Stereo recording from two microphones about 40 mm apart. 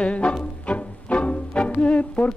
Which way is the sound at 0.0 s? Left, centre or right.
Left.